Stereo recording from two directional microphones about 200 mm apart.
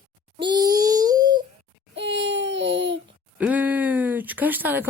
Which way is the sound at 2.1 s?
30° right (ahead or behind).